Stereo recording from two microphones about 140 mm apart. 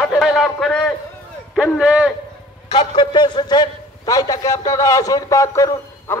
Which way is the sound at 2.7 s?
35° left (ahead or behind).